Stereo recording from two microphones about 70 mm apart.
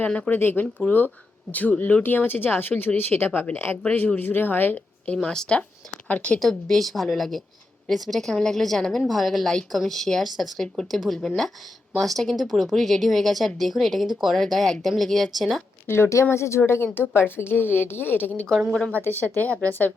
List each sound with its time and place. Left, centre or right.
0.3 s speech: left
5.1 s speech: centre
6.4 s a woman's voice: centre
15.9 s speech: left
18.3 s speech: centre
19.0 s speech: left